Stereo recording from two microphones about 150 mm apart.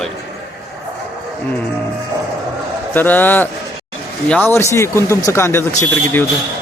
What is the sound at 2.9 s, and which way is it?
Speech, 10° left (ahead or behind).